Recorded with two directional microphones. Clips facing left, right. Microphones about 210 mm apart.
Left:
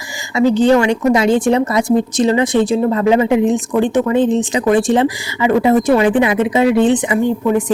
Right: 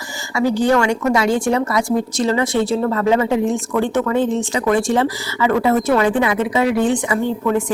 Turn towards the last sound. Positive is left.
turn(degrees=15)  # may be behind; listen again after turning